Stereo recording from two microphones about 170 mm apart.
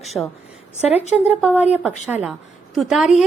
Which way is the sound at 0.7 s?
40° left (ahead or behind).